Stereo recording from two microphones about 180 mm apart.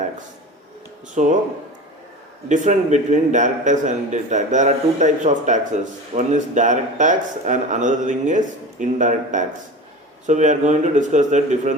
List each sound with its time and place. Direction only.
1.1 s speech: 40° right (ahead or behind)
2.5 s a man's voice: 40° right (ahead or behind)